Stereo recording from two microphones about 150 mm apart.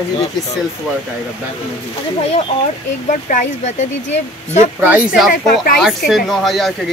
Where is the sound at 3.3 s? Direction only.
50° left (ahead or behind).